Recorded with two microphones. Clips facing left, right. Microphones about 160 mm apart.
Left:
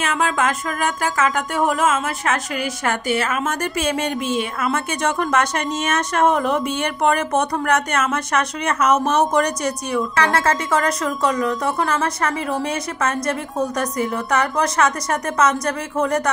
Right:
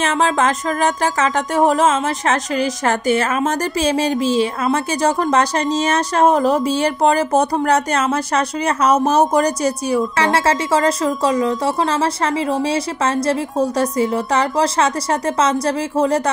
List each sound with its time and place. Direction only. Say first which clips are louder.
0.0 s music: right 4 dB; 35° right (ahead or behind)
1.6 s a woman's voice: right 4 dB; 25° right (ahead or behind)
2.2 s a woman's voice: right 4 dB; 40° right (ahead or behind)